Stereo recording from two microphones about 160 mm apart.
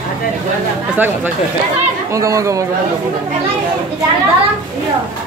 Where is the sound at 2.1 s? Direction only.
20° right (ahead or behind).